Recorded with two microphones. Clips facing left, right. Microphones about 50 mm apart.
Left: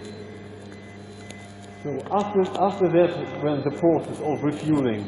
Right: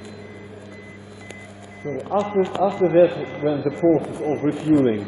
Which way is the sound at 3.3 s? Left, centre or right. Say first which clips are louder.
Right 2 dB; centre.